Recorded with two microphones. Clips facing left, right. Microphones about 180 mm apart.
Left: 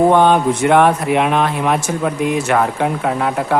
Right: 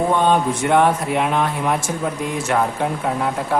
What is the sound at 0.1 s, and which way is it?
Speech, 75° left (ahead or behind).